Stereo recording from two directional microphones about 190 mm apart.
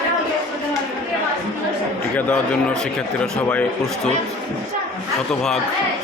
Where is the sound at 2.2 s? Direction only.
5° left (ahead or behind).